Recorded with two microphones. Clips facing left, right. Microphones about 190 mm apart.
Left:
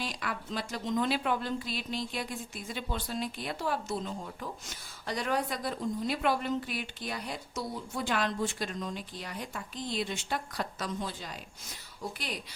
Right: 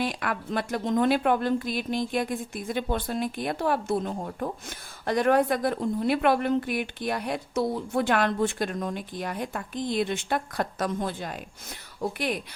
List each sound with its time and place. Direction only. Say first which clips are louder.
0.0 s a woman's voice: right 8 dB; 60° right (ahead or behind)